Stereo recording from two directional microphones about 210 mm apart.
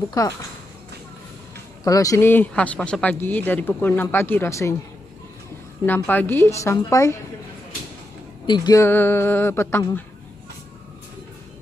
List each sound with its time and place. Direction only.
0.2 s a man's voice: 15° left (ahead or behind)
1.9 s a man's voice: 15° left (ahead or behind)
5.9 s a man's voice: 10° left (ahead or behind)
8.5 s a man's voice: 20° left (ahead or behind)